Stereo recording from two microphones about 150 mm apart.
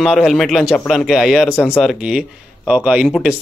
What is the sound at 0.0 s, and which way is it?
Speech, centre (ahead or behind).